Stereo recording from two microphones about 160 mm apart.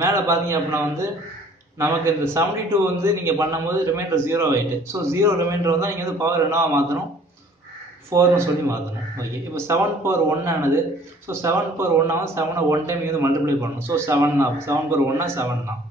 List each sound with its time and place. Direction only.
0.0 s a man's voice: 20° right (ahead or behind)
8.1 s a man's voice: 15° right (ahead or behind)